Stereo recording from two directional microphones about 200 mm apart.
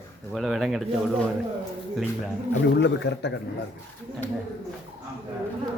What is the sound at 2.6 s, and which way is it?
Speech, 60° left (ahead or behind).